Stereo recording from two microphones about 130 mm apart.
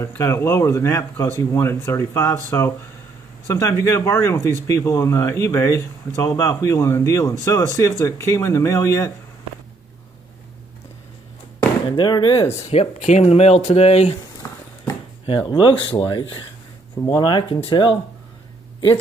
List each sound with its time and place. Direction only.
0.0 s speech: 20° left (ahead or behind)
12.0 s speech: 35° left (ahead or behind)
12.6 s speech: 55° left (ahead or behind)
14.4 s a sound: 20° left (ahead or behind)
15.2 s speech: 35° left (ahead or behind)